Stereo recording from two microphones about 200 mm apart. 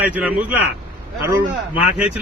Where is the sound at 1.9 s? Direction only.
5° right (ahead or behind).